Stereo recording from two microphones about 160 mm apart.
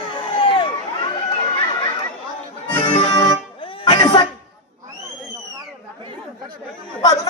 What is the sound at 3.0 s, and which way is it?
Music, 25° left (ahead or behind).